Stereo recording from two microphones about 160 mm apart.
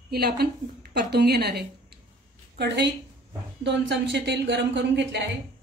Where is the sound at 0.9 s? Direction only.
90° right.